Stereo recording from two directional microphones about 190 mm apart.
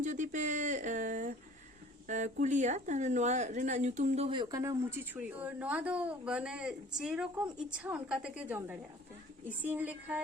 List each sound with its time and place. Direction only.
0.0 s speech: 40° right (ahead or behind); by 4.7 s 20° right (ahead or behind)
5.1 s speech: 5° right (ahead or behind)